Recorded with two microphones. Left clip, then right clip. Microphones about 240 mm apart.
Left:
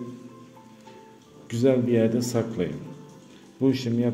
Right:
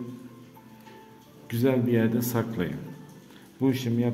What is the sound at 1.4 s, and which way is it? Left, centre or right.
A man's voice, centre.